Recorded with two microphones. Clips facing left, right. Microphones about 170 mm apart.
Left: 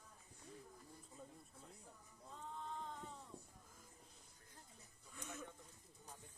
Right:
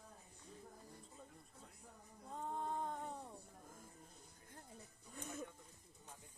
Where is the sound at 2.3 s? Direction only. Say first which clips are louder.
Right 7 dB; 50° right (ahead or behind).